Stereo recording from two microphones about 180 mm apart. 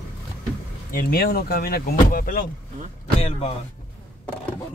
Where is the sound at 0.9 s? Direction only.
55° left (ahead or behind).